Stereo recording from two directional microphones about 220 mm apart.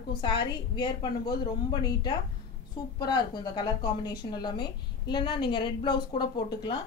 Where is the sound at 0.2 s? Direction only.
20° left (ahead or behind).